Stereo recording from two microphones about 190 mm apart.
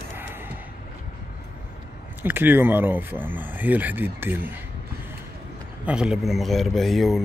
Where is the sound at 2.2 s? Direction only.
10° right (ahead or behind).